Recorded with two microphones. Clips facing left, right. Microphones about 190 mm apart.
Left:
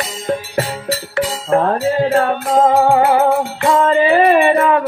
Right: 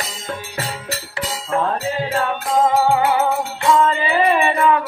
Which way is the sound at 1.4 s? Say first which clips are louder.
Left 6 dB; 45° left (ahead or behind).